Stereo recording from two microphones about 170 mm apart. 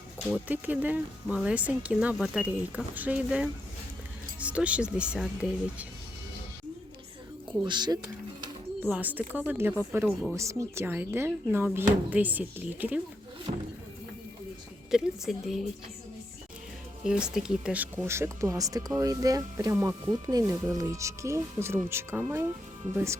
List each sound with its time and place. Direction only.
0.4 s speech: 10° right (ahead or behind)
7.6 s speech: 25° right (ahead or behind)
8.8 s speech: 10° right (ahead or behind)
9.2 s speech: 10° left (ahead or behind)
9.5 s speech: 10° right (ahead or behind)
13.5 s music: 40° right (ahead or behind)
14.8 s a woman's voice: 5° right (ahead or behind)
17.0 s speech: 5° right (ahead or behind)